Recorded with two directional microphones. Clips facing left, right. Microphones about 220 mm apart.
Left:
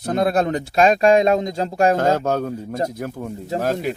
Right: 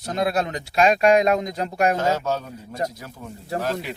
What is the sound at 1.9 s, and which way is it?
Speech, 50° left (ahead or behind).